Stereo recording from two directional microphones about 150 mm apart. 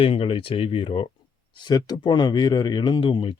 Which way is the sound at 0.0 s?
40° left (ahead or behind).